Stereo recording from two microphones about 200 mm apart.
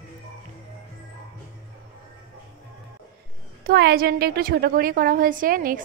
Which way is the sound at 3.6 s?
55° right (ahead or behind).